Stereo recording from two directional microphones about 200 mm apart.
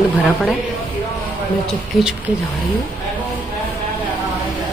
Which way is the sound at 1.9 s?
5° right (ahead or behind).